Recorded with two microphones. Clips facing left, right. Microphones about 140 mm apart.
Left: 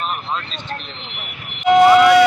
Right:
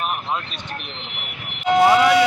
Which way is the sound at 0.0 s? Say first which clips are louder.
Even; 10° right (ahead or behind).